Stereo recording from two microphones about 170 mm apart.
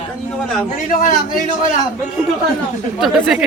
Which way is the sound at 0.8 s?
55° left (ahead or behind).